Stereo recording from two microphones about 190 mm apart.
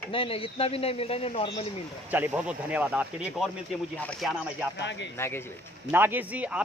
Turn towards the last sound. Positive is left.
turn(degrees=-5)  # may be behind; listen again after turning